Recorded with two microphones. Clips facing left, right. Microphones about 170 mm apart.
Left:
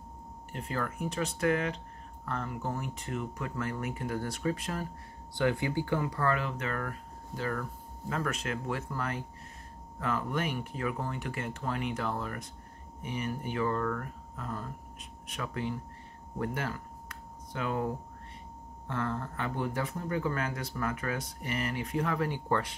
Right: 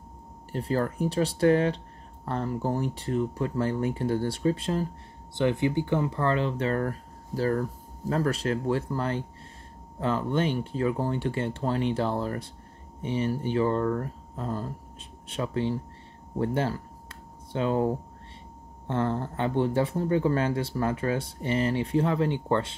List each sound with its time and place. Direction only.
0.5 s speech: 35° right (ahead or behind)
16.3 s a sound: 30° right (ahead or behind)
18.9 s speech: 30° right (ahead or behind)